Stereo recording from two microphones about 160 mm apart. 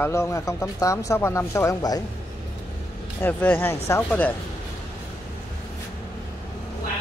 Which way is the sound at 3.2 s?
10° left (ahead or behind).